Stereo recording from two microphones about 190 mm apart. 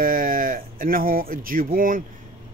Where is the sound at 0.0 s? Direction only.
45° right (ahead or behind).